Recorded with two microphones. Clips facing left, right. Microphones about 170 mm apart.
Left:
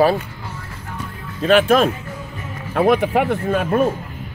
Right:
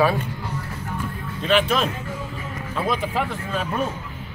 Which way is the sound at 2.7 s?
60° left (ahead or behind).